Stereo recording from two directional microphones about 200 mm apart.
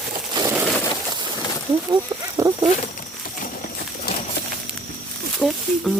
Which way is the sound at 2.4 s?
15° right (ahead or behind).